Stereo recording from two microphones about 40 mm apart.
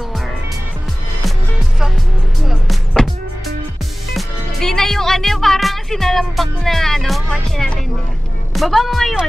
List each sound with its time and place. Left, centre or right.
3.0 s music: centre
4.6 s music: centre
7.2 s speech: left
8.5 s speech: centre